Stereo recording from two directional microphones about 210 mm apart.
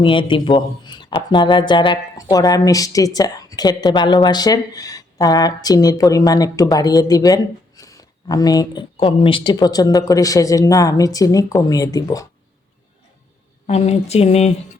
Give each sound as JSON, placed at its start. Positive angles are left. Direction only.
{"t": 0.0, "sound": "speech", "side_deg": 25}
{"t": 13.7, "sound": "speech", "side_deg": 30}